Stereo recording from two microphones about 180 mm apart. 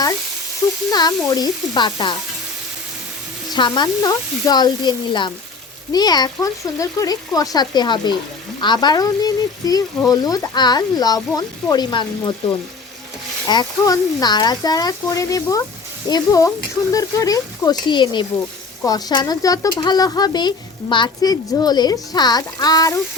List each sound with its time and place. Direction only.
0.9 s speech: 20° left (ahead or behind)
3.5 s speech: 25° left (ahead or behind)